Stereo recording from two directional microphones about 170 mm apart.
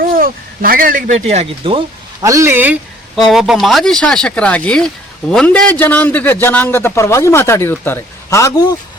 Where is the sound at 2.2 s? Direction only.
15° right (ahead or behind).